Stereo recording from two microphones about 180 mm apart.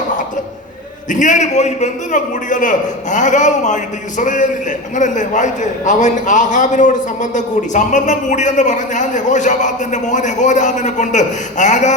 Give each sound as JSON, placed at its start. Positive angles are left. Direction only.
{"t": 1.1, "sound": "a man's voice", "side_deg": 45}